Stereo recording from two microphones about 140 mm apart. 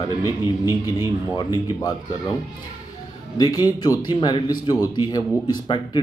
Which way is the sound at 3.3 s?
30° left (ahead or behind).